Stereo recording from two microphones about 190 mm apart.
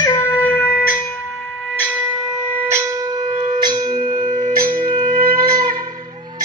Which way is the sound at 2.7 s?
15° right (ahead or behind).